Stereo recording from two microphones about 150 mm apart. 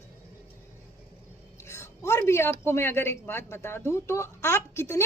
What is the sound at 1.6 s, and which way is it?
Speech, 20° left (ahead or behind).